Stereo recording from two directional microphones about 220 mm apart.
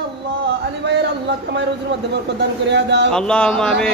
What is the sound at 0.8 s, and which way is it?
Speech, 50° right (ahead or behind).